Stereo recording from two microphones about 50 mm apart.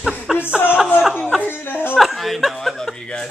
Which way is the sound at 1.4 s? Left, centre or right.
Left.